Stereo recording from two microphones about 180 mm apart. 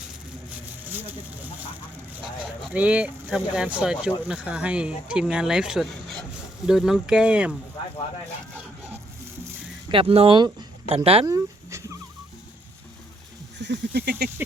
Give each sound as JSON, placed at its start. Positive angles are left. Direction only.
{"t": 2.7, "sound": "speech", "side_deg": -5}
{"t": 9.9, "sound": "speech", "side_deg": -30}
{"t": 11.3, "sound": "dog", "side_deg": -15}
{"t": 13.6, "sound": "a sound", "side_deg": -70}